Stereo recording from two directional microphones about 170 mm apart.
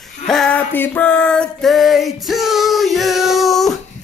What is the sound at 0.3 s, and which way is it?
Music, 5° left (ahead or behind).